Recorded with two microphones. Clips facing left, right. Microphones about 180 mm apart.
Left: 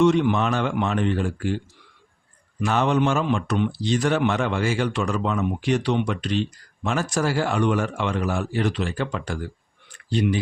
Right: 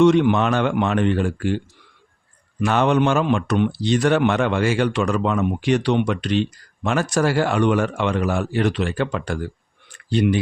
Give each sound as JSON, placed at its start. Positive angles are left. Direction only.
{"t": 0.0, "sound": "a man's voice", "side_deg": -70}